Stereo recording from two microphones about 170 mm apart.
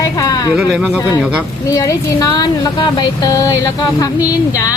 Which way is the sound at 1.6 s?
20° left (ahead or behind).